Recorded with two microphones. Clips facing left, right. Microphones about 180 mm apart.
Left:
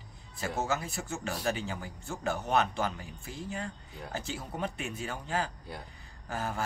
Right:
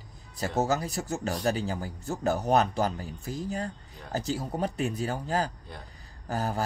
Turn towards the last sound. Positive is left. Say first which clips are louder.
# right 5 dB
turn(degrees=-40)  # may be behind; listen again after turning